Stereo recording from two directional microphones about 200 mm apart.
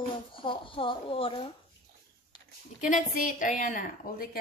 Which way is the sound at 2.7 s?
40° left (ahead or behind).